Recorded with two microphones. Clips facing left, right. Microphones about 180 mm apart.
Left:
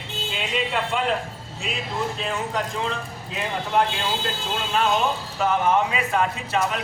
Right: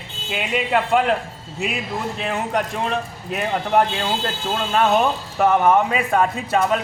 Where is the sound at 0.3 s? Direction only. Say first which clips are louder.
Right 6 dB; 55° right (ahead or behind).